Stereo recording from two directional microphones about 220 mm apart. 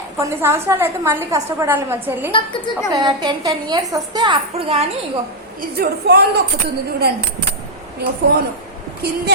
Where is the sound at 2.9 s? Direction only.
20° right (ahead or behind).